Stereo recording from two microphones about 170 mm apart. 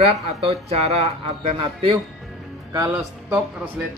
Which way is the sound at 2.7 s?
20° right (ahead or behind).